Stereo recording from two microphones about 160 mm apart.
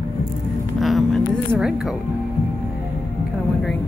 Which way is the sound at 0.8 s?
Centre (ahead or behind).